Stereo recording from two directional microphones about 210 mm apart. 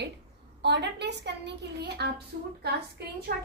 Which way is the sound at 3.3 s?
45° right (ahead or behind).